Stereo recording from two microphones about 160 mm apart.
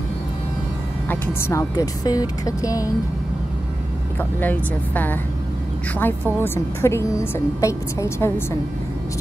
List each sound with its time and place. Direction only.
1.0 s speech: 10° left (ahead or behind)
4.2 s a woman's voice: 10° left (ahead or behind)